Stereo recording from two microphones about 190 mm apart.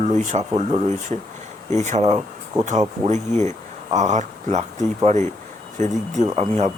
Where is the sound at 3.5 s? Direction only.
40° right (ahead or behind).